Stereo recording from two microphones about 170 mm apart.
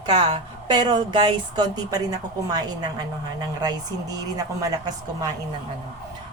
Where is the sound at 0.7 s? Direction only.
25° right (ahead or behind).